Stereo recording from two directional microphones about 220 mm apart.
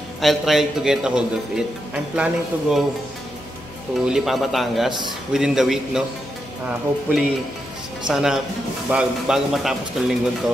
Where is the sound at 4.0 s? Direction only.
Centre (ahead or behind).